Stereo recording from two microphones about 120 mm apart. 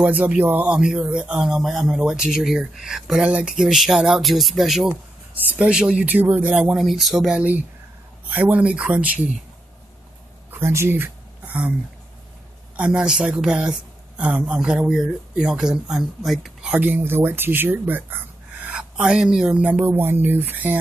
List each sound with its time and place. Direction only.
0.0 s speech: 10° right (ahead or behind)
5.3 s speech: 15° right (ahead or behind)
6.6 s speech: centre (ahead or behind)
10.5 s a sound: 20° right (ahead or behind)
12.7 s speech: 10° right (ahead or behind)